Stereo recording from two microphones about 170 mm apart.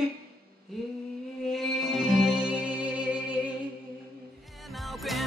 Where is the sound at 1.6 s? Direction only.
Centre (ahead or behind).